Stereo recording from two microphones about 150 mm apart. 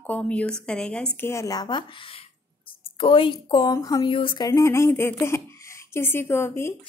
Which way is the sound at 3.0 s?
35° left (ahead or behind).